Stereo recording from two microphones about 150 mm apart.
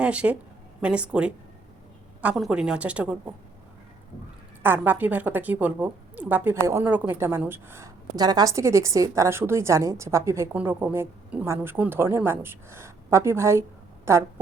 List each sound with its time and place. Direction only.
0.0 s a woman's voice: 10° right (ahead or behind)
4.6 s a woman's voice: 10° right (ahead or behind)